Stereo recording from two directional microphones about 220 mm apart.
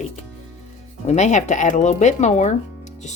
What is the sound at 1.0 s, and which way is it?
Speech, 30° left (ahead or behind).